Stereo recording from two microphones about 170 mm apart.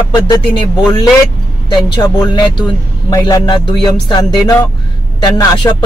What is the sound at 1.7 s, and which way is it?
A man's voice, 25° left (ahead or behind).